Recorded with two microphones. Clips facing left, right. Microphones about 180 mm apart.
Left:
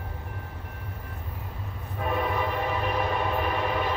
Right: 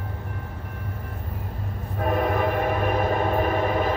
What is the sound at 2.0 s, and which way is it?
Train, 50° right (ahead or behind).